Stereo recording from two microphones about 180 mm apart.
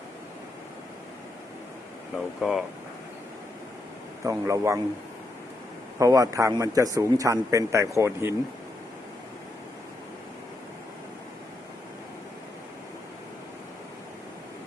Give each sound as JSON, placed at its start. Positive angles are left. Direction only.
{"t": 2.1, "sound": "speech", "side_deg": 0}
{"t": 4.2, "sound": "speech", "side_deg": -15}
{"t": 6.0, "sound": "speech", "side_deg": -20}